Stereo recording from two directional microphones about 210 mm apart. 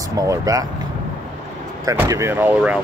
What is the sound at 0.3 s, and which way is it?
Speech, 15° right (ahead or behind).